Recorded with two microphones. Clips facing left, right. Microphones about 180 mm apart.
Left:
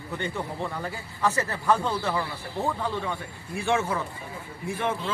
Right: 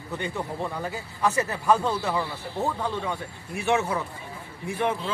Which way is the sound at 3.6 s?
20° right (ahead or behind).